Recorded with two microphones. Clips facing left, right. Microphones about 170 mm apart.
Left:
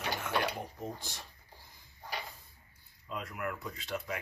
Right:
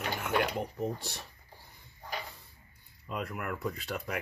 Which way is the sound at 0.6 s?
70° right (ahead or behind).